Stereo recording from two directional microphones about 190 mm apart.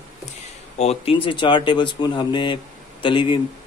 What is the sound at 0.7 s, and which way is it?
Speech, 30° left (ahead or behind).